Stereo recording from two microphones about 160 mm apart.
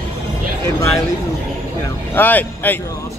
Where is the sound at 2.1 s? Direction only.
10° left (ahead or behind).